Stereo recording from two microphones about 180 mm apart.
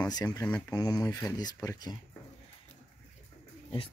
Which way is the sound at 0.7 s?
20° left (ahead or behind).